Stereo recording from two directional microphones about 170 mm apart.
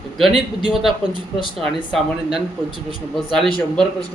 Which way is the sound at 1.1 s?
30° left (ahead or behind).